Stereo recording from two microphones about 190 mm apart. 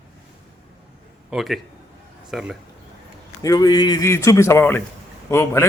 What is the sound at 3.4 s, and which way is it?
A man's voice, 20° left (ahead or behind).